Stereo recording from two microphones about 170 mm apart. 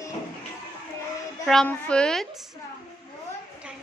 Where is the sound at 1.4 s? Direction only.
5° left (ahead or behind).